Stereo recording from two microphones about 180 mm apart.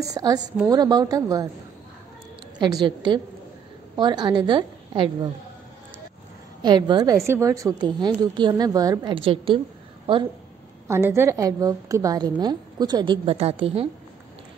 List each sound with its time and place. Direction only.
0.0 s a woman's voice: 20° right (ahead or behind)
2.6 s a woman's voice: 25° right (ahead or behind)
6.6 s a woman's voice: 25° right (ahead or behind)
10.9 s a woman's voice: 15° right (ahead or behind); by 13.8 s 30° right (ahead or behind)